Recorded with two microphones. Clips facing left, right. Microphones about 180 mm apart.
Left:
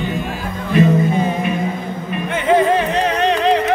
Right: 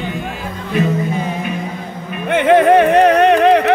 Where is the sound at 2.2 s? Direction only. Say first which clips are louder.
Right 4 dB; 65° right (ahead or behind).